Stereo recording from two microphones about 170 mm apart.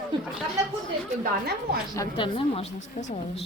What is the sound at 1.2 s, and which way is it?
Speech, 65° right (ahead or behind).